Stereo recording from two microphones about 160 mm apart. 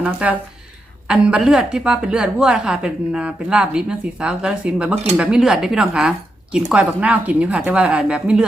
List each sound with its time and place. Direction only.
0.0 s a woman's voice: 10° right (ahead or behind)